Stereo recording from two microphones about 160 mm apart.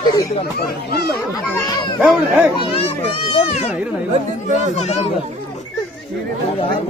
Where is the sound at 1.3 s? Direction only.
20° left (ahead or behind).